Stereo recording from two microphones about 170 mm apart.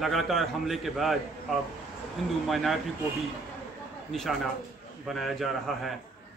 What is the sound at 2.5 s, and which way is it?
Speech, centre (ahead or behind).